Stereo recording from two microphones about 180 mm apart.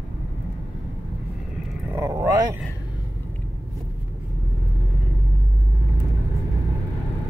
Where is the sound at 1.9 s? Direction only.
15° right (ahead or behind).